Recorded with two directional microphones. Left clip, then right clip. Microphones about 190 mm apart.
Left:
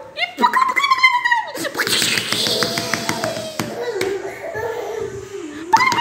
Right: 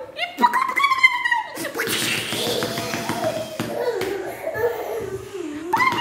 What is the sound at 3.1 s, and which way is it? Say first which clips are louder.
Tap: left 3 dB; 50° left (ahead or behind).